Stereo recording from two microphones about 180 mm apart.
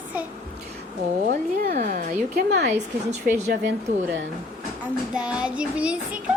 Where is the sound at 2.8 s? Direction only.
40° right (ahead or behind).